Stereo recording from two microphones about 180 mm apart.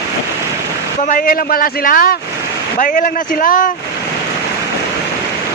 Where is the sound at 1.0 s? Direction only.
50° left (ahead or behind).